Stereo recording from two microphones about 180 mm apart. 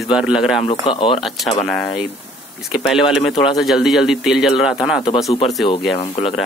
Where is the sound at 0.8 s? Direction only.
30° left (ahead or behind).